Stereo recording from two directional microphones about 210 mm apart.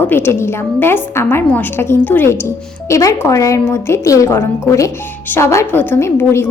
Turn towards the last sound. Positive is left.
turn(degrees=10)  # may be behind; listen again after turning